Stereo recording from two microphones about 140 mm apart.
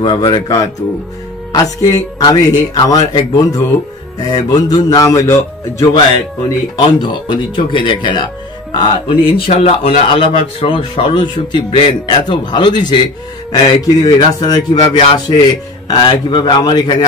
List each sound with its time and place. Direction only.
0.0 s a man's voice: 35° left (ahead or behind)
7.0 s a man's voice: 35° left (ahead or behind)
14.8 s speech: 40° left (ahead or behind)
15.9 s a man's voice: 30° left (ahead or behind)